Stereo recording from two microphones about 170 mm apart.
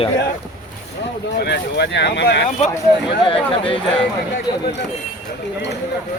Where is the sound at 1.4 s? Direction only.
80° left.